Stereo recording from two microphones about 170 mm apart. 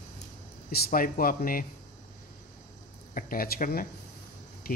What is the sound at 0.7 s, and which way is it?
Speech, 65° left (ahead or behind).